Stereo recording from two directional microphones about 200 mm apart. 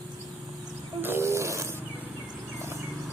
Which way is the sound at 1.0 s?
10° right (ahead or behind).